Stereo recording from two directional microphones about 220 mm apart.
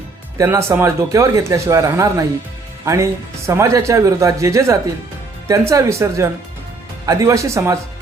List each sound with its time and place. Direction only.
0.3 s speech: 10° right (ahead or behind)